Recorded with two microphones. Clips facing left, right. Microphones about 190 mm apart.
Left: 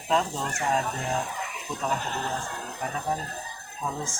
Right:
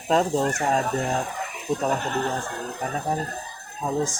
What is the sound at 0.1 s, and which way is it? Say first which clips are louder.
Speech: right 6 dB; 40° right (ahead or behind).